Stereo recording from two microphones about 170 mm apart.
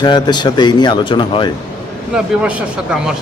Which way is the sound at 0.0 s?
25° left (ahead or behind).